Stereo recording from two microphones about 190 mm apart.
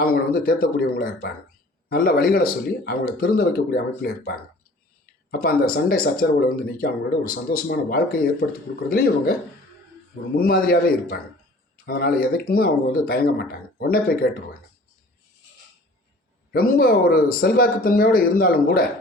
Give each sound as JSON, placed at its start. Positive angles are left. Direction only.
{"t": 0.0, "sound": "speech", "side_deg": 50}
{"t": 10.3, "sound": "speech", "side_deg": 50}
{"t": 16.5, "sound": "speech", "side_deg": 50}